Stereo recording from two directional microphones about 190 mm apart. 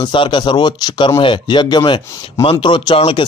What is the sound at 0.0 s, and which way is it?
Speech, 25° left (ahead or behind).